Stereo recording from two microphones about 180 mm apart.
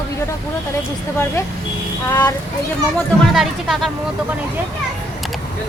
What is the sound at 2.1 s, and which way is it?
Speech, 20° left (ahead or behind).